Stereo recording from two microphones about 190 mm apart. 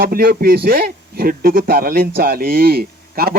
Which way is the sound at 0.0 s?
50° right (ahead or behind).